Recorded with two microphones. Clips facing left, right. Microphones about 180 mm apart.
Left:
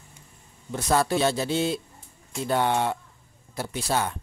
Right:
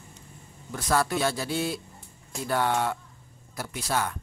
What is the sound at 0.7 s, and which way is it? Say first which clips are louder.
Speech: left 3 dB; 25° left (ahead or behind).